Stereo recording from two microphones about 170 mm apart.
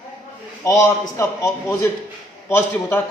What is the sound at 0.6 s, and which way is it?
A man's voice, 20° left (ahead or behind).